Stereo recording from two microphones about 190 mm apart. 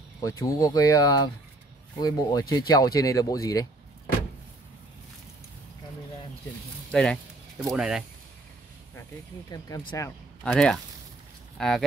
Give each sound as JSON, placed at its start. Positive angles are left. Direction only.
{"t": 0.2, "sound": "speech", "side_deg": 15}
{"t": 6.9, "sound": "speech", "side_deg": 5}
{"t": 9.5, "sound": "speech", "side_deg": 15}
{"t": 10.4, "sound": "speech", "side_deg": 5}